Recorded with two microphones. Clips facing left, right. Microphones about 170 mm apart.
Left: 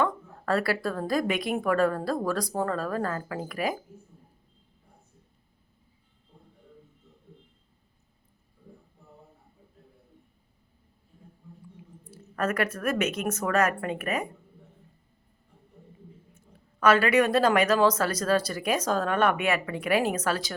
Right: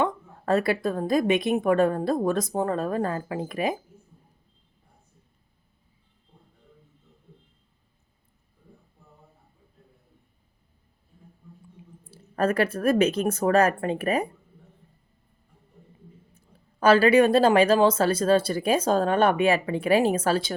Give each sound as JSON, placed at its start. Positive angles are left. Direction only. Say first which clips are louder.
{"t": 0.0, "sound": "a woman's voice", "louder": "right 1 dB", "side_deg": -20}
{"t": 12.1, "sound": "speech", "louder": "right 5 dB", "side_deg": -30}
{"t": 16.8, "sound": "a woman's voice", "louder": "right 4 dB", "side_deg": -30}